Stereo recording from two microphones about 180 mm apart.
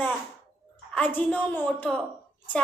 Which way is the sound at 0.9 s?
10° left (ahead or behind).